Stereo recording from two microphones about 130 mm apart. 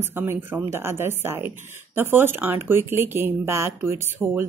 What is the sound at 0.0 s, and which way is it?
Speech, 15° right (ahead or behind).